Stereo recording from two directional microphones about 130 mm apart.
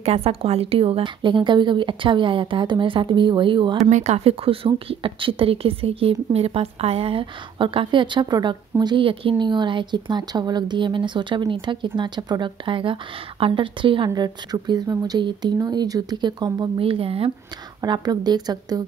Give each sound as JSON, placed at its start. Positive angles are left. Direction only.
{"t": 0.0, "sound": "a woman's voice", "side_deg": -50}
{"t": 3.9, "sound": "a woman's voice", "side_deg": -60}
{"t": 16.8, "sound": "speech", "side_deg": -45}
{"t": 17.8, "sound": "a woman's voice", "side_deg": -35}